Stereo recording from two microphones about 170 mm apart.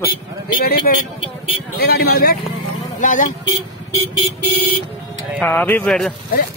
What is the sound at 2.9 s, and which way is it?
Speech, 50° left (ahead or behind).